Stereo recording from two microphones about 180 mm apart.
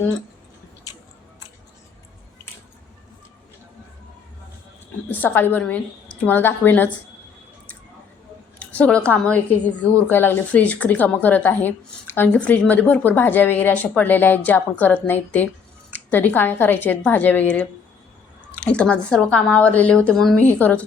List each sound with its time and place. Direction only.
5.0 s speech: 10° left (ahead or behind)
8.5 s a woman's voice: 5° left (ahead or behind)